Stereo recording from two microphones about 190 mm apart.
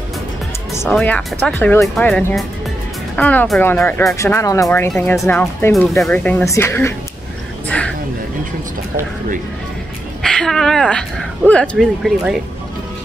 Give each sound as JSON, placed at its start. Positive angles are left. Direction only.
{"t": 0.7, "sound": "speech", "side_deg": 5}
{"t": 7.6, "sound": "a sound", "side_deg": 5}
{"t": 10.2, "sound": "speech", "side_deg": 5}